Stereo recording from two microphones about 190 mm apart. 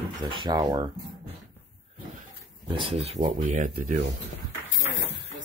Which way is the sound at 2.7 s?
30° right (ahead or behind).